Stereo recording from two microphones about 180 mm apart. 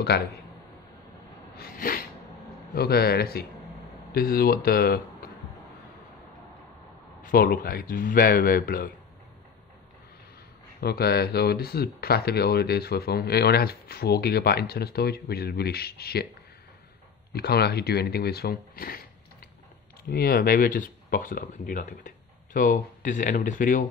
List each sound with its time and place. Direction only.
0.1 s speech: 65° left (ahead or behind)
1.6 s a sound: 55° left (ahead or behind)
2.7 s speech: 60° left (ahead or behind)
7.2 s speech: 55° left (ahead or behind)
10.8 s speech: 60° left (ahead or behind)
17.3 s speech: 60° left (ahead or behind)
20.1 s speech: 55° left (ahead or behind)